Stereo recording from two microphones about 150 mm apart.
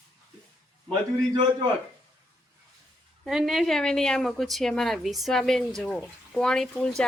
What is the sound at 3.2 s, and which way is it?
A woman's voice, centre (ahead or behind).